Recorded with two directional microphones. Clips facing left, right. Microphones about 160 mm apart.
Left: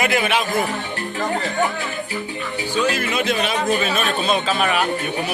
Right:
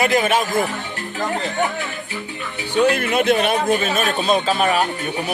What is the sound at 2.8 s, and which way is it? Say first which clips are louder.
Speech: right 5 dB; 60° right (ahead or behind).